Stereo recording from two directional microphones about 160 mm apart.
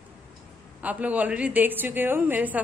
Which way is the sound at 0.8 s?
10° right (ahead or behind).